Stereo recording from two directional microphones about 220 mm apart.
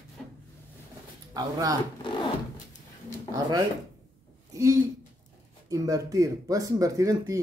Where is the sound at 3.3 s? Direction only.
15° right (ahead or behind).